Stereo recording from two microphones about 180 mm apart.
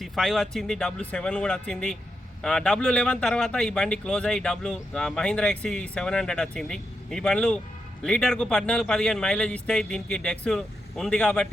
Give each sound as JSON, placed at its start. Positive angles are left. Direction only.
{"t": 0.0, "sound": "speech", "side_deg": 0}